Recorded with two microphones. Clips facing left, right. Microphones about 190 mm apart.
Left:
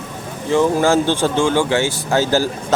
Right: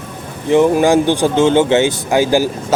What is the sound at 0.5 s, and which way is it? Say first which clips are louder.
Speech: right 4 dB; 15° right (ahead or behind).